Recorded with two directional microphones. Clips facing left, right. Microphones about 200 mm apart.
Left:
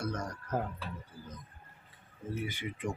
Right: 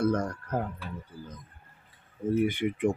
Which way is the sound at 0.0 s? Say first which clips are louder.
Right 10 dB; 55° right (ahead or behind).